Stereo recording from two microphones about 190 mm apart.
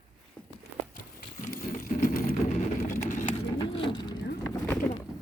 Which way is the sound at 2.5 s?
45° left (ahead or behind).